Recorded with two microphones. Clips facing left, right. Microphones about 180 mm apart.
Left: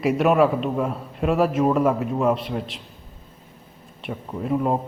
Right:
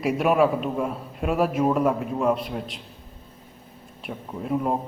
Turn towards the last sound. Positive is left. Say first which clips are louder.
# left 3 dB
turn(degrees=0)  # may be behind; listen again after turning